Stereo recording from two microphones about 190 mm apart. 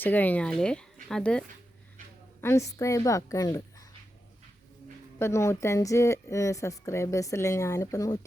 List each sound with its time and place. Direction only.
0.0 s speech: 10° left (ahead or behind)
2.4 s a woman's voice: 15° left (ahead or behind)
5.2 s a woman's voice: 15° left (ahead or behind)